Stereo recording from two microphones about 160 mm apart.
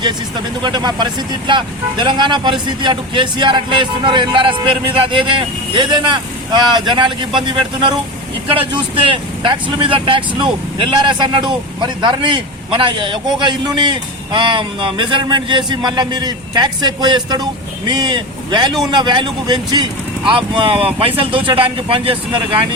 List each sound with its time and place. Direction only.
0.6 s speech: 25° right (ahead or behind)